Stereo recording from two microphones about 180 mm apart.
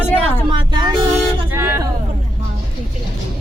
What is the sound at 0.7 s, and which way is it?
Vehicle, 25° right (ahead or behind).